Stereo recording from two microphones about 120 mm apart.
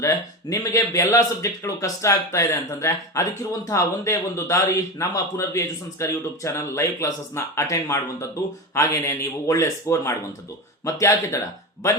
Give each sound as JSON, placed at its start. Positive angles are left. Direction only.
{"t": 0.0, "sound": "speech", "side_deg": 30}